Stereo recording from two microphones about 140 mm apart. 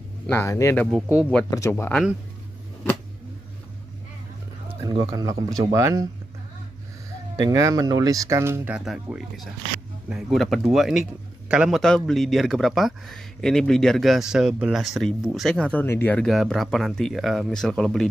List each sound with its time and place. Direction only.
0.3 s speech: 20° left (ahead or behind)
4.7 s speech: 30° right (ahead or behind)
7.3 s speech: 25° right (ahead or behind)
8.7 s speech: 5° right (ahead or behind)
11.8 s speech: 5° left (ahead or behind)
16.3 s speech: centre (ahead or behind)